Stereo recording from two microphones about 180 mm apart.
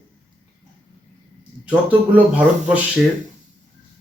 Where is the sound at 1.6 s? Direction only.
10° right (ahead or behind).